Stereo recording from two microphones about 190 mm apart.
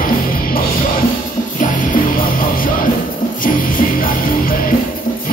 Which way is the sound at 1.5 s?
45° left (ahead or behind).